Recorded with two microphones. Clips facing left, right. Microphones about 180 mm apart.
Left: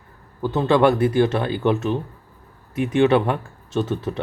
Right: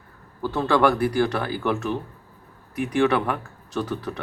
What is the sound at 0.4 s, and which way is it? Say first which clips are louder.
Speech: left 3 dB; 20° left (ahead or behind).